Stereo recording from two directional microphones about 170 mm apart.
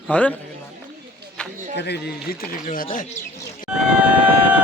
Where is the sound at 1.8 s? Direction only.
75° left (ahead or behind); by 3.0 s 55° left (ahead or behind).